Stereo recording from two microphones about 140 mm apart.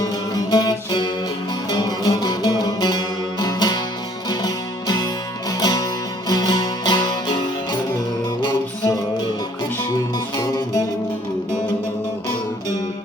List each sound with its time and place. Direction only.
0.0 s music: 30° left (ahead or behind)
10.3 s music: 30° left (ahead or behind)